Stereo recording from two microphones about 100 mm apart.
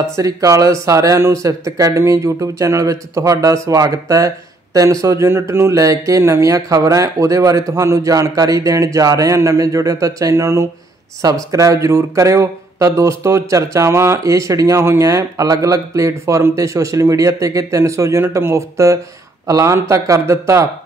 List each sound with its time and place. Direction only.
0.0 s speech: 30° right (ahead or behind)